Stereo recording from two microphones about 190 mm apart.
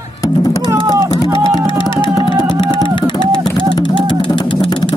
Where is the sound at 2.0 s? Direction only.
25° left (ahead or behind).